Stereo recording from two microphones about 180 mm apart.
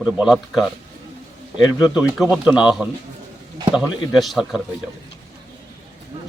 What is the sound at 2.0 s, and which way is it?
Speech, 5° right (ahead or behind).